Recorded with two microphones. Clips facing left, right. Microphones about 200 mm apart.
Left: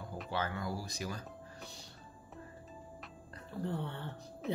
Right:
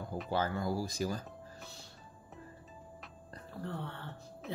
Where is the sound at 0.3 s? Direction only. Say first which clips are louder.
Right 4 dB; 35° right (ahead or behind).